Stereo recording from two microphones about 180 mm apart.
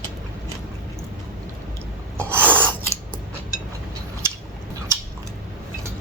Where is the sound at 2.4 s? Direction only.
10° left (ahead or behind).